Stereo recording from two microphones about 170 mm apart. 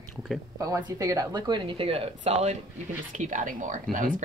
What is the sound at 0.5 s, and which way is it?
A woman's voice, 20° right (ahead or behind).